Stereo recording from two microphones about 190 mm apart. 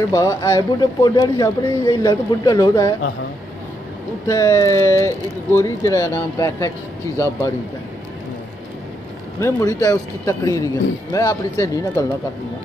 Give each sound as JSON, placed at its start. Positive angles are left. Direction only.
{"t": 0.1, "sound": "speech", "side_deg": 20}
{"t": 4.3, "sound": "a man's voice", "side_deg": 15}
{"t": 9.4, "sound": "a man's voice", "side_deg": 15}